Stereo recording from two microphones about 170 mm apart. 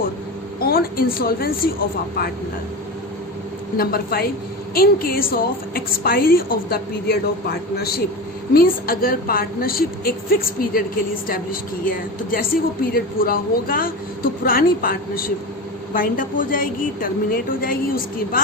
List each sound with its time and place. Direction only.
0.6 s a woman's voice: 60° left (ahead or behind)
3.8 s a woman's voice: 60° left (ahead or behind)